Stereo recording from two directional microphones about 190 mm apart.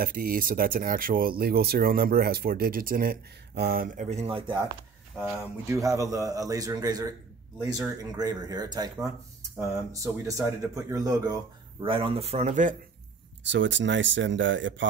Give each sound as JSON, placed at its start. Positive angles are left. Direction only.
{"t": 0.0, "sound": "speech", "side_deg": -50}
{"t": 5.4, "sound": "speech", "side_deg": -15}
{"t": 10.2, "sound": "speech", "side_deg": -15}
{"t": 13.4, "sound": "speech", "side_deg": -75}